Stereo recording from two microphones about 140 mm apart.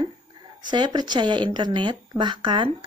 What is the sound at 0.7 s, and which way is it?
Speech, 30° right (ahead or behind).